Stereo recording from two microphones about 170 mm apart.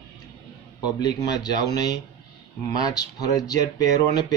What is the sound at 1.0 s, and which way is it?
Speech, 25° left (ahead or behind).